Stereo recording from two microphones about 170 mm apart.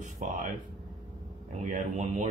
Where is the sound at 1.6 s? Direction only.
45° right (ahead or behind).